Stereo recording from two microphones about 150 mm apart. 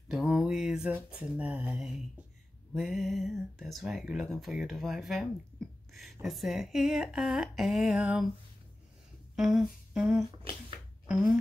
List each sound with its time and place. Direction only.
0.1 s a sound: centre (ahead or behind)
2.7 s speech: centre (ahead or behind)
9.3 s humming: 5° right (ahead or behind)
11.1 s speech: centre (ahead or behind)